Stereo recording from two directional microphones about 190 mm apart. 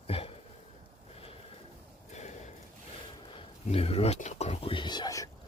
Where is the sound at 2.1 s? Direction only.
35° left (ahead or behind).